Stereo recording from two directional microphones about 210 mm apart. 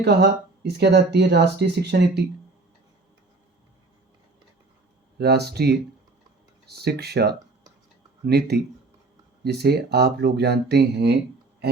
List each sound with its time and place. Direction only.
0.0 s speech: 50° right (ahead or behind)
5.1 s speech: 50° right (ahead or behind)